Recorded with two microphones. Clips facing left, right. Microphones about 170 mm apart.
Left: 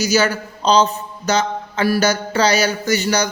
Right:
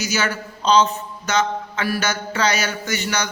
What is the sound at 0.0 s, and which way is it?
A man's voice, 35° left (ahead or behind).